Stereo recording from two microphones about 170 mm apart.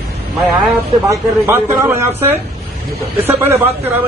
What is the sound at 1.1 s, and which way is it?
Speech, 15° right (ahead or behind).